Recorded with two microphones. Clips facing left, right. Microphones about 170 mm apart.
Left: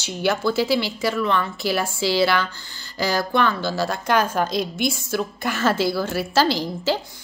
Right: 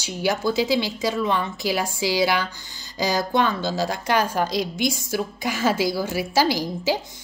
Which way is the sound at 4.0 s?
50° left (ahead or behind).